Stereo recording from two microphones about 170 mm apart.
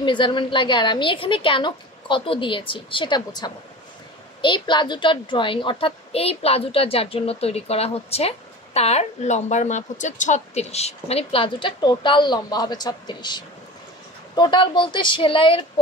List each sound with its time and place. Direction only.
0.0 s a woman's voice: 30° left (ahead or behind)